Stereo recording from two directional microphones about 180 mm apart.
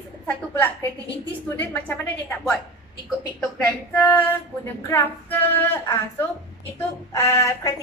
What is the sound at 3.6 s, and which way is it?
Speech, 10° left (ahead or behind).